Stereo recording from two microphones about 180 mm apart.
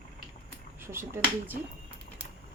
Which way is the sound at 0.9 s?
15° right (ahead or behind).